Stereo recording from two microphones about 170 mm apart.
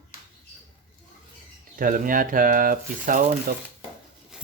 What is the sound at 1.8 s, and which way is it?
Speech, 55° right (ahead or behind).